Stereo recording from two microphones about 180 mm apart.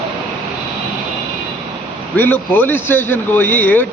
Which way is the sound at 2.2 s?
10° left (ahead or behind).